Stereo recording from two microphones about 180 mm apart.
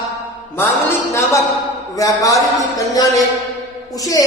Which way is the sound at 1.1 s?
15° left (ahead or behind).